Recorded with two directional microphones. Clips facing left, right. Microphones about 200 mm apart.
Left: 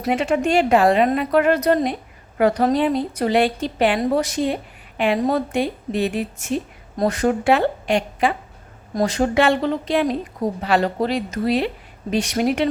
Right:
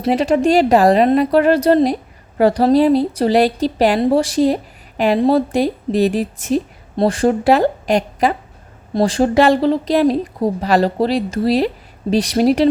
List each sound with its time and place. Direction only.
0.0 s a woman's voice: 35° right (ahead or behind)